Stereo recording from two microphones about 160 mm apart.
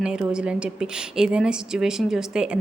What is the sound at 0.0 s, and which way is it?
A woman's voice, 5° right (ahead or behind).